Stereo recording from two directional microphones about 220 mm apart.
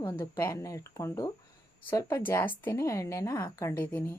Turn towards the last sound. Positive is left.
turn(degrees=10)  # may be behind; listen again after turning